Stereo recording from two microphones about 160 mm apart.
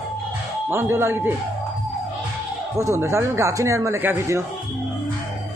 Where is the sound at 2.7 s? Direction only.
20° right (ahead or behind).